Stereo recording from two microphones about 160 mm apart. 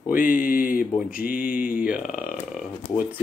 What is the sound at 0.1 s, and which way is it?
Speech, 60° left (ahead or behind).